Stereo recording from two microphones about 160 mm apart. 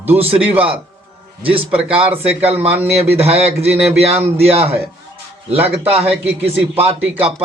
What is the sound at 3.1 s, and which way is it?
Speech, 40° right (ahead or behind).